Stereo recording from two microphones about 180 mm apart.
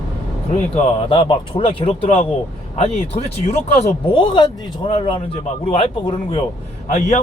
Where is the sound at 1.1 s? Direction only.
25° left (ahead or behind).